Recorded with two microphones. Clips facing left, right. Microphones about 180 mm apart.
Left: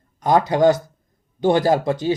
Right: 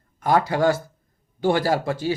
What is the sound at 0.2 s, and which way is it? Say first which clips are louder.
A man's voice: left 4 dB; 20° left (ahead or behind).